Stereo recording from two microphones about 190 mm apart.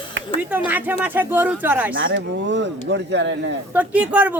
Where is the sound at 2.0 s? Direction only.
65° right (ahead or behind).